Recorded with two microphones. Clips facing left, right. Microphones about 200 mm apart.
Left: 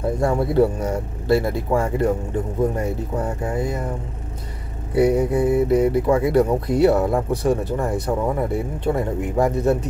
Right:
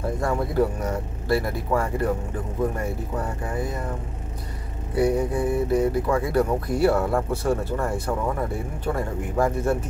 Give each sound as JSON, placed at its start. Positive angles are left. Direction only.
{"t": 0.2, "sound": "speech", "side_deg": 25}
{"t": 4.9, "sound": "speech", "side_deg": 20}